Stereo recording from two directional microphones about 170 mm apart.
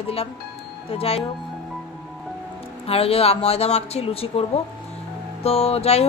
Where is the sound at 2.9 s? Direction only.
35° left (ahead or behind).